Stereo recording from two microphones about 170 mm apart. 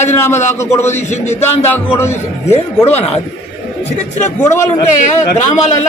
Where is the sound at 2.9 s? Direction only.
40° left (ahead or behind).